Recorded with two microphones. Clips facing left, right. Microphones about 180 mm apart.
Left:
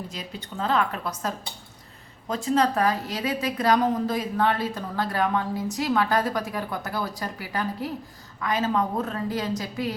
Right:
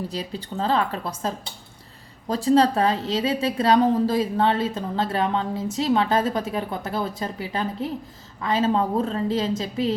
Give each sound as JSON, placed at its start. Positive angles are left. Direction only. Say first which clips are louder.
{"t": 0.1, "sound": "speech", "louder": "right 6 dB", "side_deg": -35}
{"t": 2.3, "sound": "a woman's voice", "louder": "right 5 dB", "side_deg": -35}